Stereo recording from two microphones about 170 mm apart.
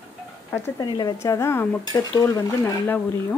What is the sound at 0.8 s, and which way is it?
Speech, 25° left (ahead or behind).